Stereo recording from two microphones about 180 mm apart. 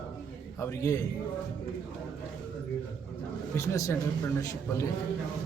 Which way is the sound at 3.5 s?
15° left (ahead or behind).